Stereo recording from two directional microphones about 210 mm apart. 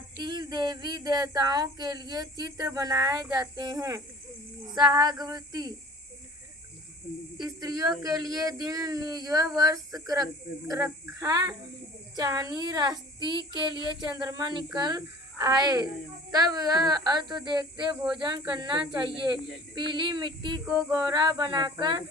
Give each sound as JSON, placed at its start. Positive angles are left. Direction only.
{"t": 0.2, "sound": "speech", "side_deg": -20}
{"t": 7.3, "sound": "speech", "side_deg": -20}